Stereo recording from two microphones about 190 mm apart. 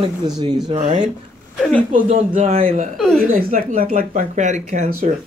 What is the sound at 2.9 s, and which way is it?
Speech, centre (ahead or behind).